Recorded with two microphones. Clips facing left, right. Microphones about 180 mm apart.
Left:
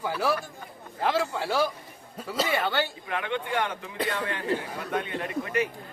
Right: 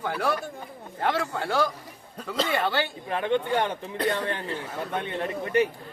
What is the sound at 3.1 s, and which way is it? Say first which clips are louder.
Speech: right 5 dB; 35° right (ahead or behind).